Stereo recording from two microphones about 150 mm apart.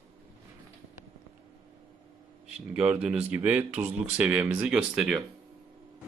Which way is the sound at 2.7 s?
5° right (ahead or behind).